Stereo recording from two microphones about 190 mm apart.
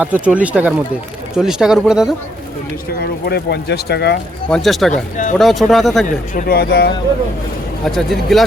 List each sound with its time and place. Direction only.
0.0 s speech: 5° right (ahead or behind)
3.0 s speech: 55° left (ahead or behind)
4.4 s speech: centre (ahead or behind)
6.3 s speech: 50° left (ahead or behind)
7.9 s speech: centre (ahead or behind)